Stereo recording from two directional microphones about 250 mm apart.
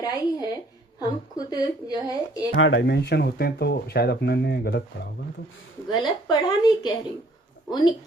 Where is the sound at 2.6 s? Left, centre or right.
Left.